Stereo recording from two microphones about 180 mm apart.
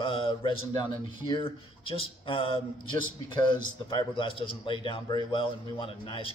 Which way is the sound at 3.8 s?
30° left (ahead or behind).